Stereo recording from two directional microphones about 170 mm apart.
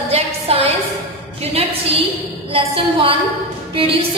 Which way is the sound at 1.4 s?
35° right (ahead or behind).